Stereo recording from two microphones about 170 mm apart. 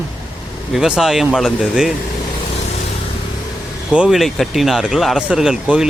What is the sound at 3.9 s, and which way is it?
Speech, 5° right (ahead or behind).